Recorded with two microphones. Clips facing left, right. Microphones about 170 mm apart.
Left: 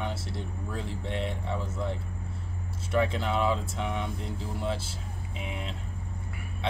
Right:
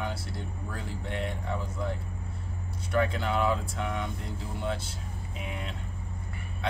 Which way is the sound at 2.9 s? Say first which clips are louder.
Left 1 dB; 25° left (ahead or behind).